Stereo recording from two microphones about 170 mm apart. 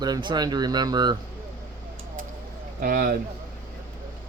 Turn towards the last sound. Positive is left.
turn(degrees=-60)  # may be behind; listen again after turning